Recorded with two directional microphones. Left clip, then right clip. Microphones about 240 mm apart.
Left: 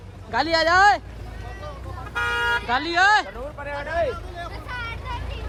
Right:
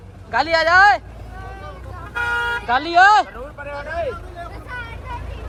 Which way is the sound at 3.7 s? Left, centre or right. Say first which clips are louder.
Left 1 dB; left.